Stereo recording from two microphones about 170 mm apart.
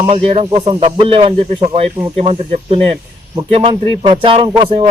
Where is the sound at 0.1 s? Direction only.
35° right (ahead or behind).